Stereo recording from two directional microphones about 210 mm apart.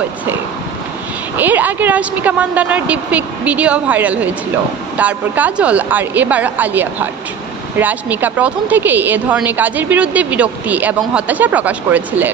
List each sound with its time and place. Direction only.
1.4 s a woman's voice: 10° right (ahead or behind)